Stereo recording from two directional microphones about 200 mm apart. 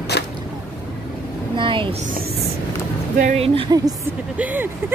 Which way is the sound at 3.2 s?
35° right (ahead or behind).